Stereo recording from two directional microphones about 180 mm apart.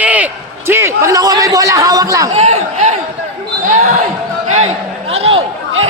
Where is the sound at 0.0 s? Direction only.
10° right (ahead or behind).